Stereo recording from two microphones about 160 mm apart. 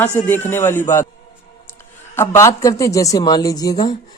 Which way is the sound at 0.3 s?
10° left (ahead or behind).